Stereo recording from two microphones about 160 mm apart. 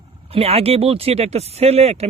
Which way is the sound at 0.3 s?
40° right (ahead or behind).